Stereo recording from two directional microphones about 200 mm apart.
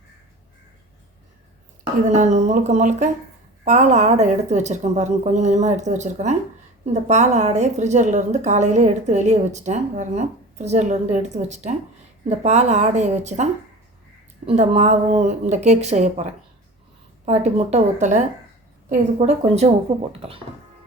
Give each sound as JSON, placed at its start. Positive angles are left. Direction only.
{"t": 2.0, "sound": "a woman's voice", "side_deg": -35}
{"t": 17.2, "sound": "a woman's voice", "side_deg": -30}